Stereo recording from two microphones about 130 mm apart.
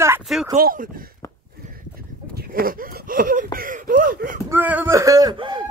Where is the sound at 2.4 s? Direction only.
90° right.